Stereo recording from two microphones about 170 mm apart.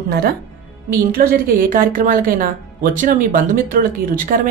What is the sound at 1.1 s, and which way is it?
Speech, 60° right (ahead or behind).